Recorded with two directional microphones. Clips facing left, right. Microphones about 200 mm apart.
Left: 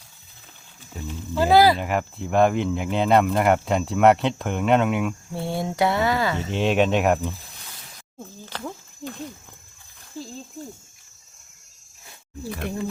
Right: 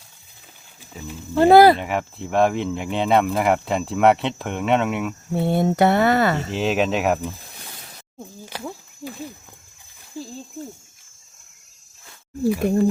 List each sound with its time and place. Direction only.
1.4 s speech: 55° right (ahead or behind)
1.8 s speech: centre (ahead or behind)
5.3 s speech: 55° right (ahead or behind)
6.5 s speech: centre (ahead or behind)
8.2 s speech: 10° right (ahead or behind)
12.6 s speech: 45° right (ahead or behind)